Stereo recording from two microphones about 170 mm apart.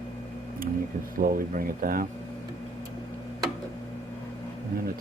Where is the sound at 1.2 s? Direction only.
55° right (ahead or behind).